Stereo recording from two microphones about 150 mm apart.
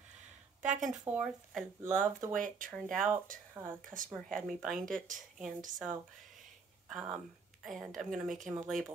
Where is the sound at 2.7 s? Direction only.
5° left (ahead or behind).